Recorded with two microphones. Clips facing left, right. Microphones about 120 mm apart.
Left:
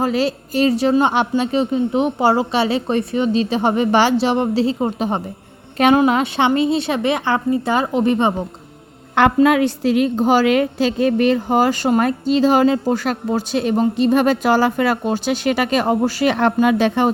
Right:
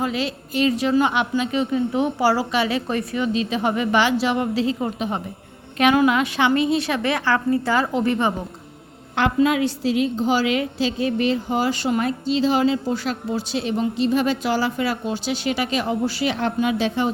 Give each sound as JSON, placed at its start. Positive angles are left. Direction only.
{"t": 0.0, "sound": "a woman's voice", "side_deg": 40}
{"t": 9.1, "sound": "a woman's voice", "side_deg": 55}